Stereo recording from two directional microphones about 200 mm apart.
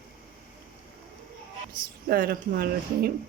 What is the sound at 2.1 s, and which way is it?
Speech, 50° right (ahead or behind).